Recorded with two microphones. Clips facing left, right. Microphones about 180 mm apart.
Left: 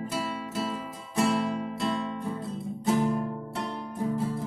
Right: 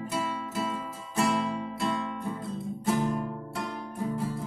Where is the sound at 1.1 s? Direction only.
30° left (ahead or behind).